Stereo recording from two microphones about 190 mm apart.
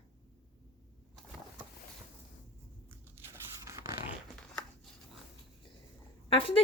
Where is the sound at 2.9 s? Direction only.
10° right (ahead or behind).